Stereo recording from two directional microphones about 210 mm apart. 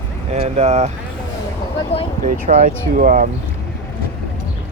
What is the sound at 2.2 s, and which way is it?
Speech, 40° right (ahead or behind).